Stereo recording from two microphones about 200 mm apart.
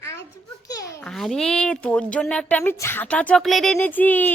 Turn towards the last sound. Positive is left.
turn(degrees=10)  # may be behind; listen again after turning